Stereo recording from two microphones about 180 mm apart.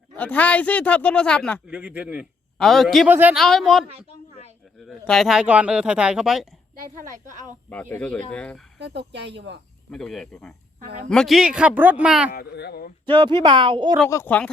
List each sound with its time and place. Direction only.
0.2 s speech: 10° left (ahead or behind)
1.6 s speech: 5° right (ahead or behind)
3.1 s speech: 10° right (ahead or behind)
3.3 s speech: centre (ahead or behind)
7.0 s a woman's voice: 45° right (ahead or behind)
7.7 s speech: 10° left (ahead or behind)
8.8 s speech: 70° right (ahead or behind)
9.9 s speech: centre (ahead or behind)
10.8 s a woman's voice: 50° right (ahead or behind)
11.1 s speech: centre (ahead or behind)
12.3 s speech: 60° left (ahead or behind)
13.1 s speech: 30° right (ahead or behind)
14.1 s speech: 10° left (ahead or behind)